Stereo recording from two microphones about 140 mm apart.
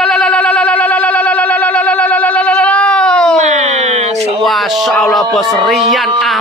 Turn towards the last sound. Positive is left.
turn(degrees=0)  # may be behind; listen again after turning